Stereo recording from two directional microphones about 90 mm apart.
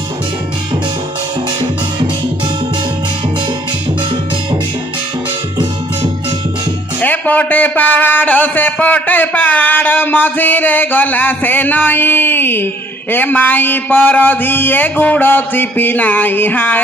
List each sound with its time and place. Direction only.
7.0 s a man's voice: 20° left (ahead or behind)